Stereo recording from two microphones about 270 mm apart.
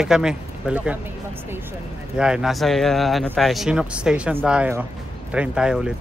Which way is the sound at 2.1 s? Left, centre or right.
Centre.